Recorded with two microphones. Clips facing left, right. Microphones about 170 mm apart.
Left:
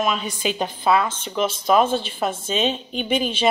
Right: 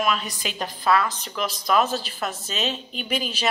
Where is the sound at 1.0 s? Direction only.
30° left (ahead or behind).